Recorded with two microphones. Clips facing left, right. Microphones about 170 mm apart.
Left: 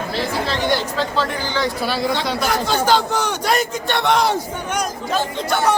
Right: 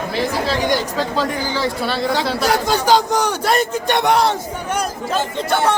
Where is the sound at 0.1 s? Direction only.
15° right (ahead or behind).